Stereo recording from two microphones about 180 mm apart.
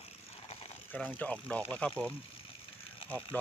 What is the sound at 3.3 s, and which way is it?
Speech, 10° left (ahead or behind).